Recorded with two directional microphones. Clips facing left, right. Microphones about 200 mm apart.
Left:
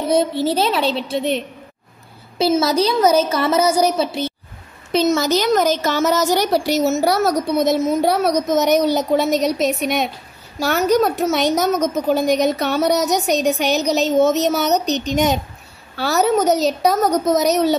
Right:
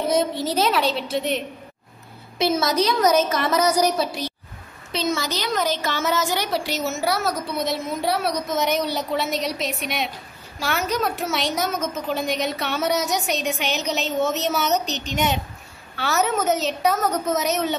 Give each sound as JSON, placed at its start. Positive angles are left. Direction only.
{"t": 0.1, "sound": "a woman's voice", "side_deg": 30}
{"t": 2.3, "sound": "a woman's voice", "side_deg": 30}
{"t": 4.9, "sound": "a woman's voice", "side_deg": 45}